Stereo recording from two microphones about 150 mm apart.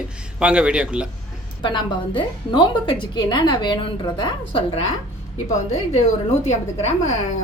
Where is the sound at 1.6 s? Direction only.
35° left (ahead or behind).